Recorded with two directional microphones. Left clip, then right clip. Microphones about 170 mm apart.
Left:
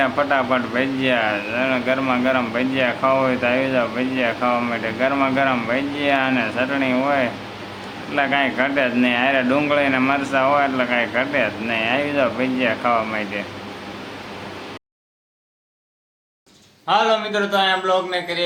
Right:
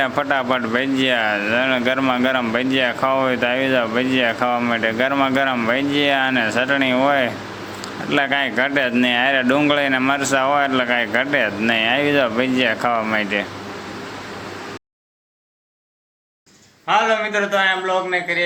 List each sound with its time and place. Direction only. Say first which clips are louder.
0.0 s speech: left 1 dB; 35° right (ahead or behind)
16.8 s a man's voice: right 1 dB; 15° left (ahead or behind)